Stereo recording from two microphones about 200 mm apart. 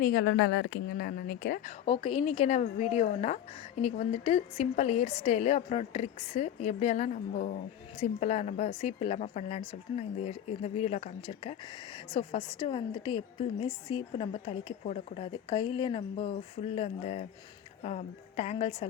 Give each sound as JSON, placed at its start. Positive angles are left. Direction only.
{"t": 0.0, "sound": "a woman's voice", "side_deg": 50}
{"t": 1.9, "sound": "a woman's voice", "side_deg": 25}